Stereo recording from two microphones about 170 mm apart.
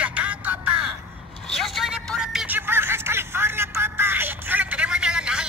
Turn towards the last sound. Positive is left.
turn(degrees=-5)  # may be behind; listen again after turning